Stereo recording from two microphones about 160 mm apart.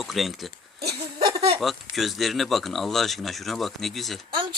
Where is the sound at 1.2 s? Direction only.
30° right (ahead or behind).